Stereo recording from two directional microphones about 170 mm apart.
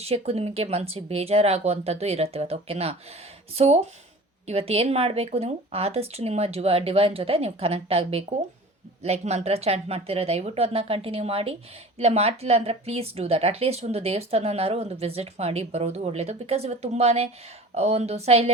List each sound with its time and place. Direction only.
0.0 s a woman's voice: 35° right (ahead or behind)